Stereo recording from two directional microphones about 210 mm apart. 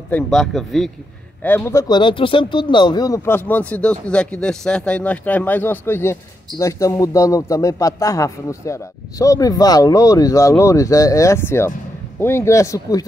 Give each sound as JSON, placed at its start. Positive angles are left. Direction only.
{"t": 0.1, "sound": "speech", "side_deg": 0}